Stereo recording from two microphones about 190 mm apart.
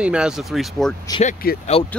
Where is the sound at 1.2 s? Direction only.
45° left (ahead or behind).